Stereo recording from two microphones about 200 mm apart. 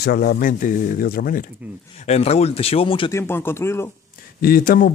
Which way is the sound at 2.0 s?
30° left (ahead or behind).